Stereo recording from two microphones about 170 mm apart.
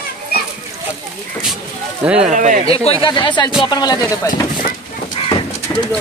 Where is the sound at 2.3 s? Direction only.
45° right (ahead or behind).